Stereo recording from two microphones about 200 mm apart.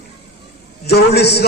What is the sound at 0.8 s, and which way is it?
Speech, 55° left (ahead or behind).